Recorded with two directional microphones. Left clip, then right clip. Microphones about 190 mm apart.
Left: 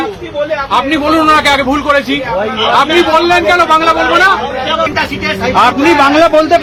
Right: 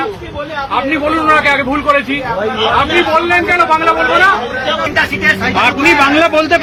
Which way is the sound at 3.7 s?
20° left (ahead or behind).